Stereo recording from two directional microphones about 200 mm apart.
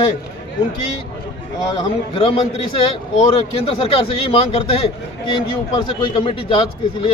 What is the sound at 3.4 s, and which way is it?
A man's voice, 30° left (ahead or behind).